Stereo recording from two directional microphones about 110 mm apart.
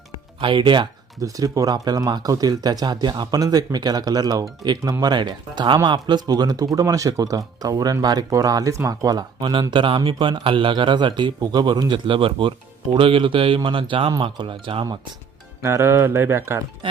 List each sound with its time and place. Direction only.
0.3 s speech: 50° right (ahead or behind)
1.2 s speech: 30° right (ahead or behind)
9.4 s speech: 50° right (ahead or behind)
15.6 s speech: 25° right (ahead or behind)